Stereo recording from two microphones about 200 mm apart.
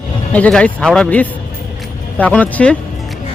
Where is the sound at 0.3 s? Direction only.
5° left (ahead or behind).